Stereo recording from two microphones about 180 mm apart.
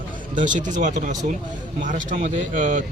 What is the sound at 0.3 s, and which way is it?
Speech, 45° right (ahead or behind).